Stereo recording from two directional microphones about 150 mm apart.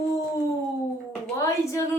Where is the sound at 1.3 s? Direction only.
20° left (ahead or behind).